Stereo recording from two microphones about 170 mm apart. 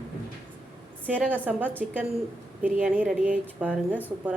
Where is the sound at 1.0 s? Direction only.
10° right (ahead or behind).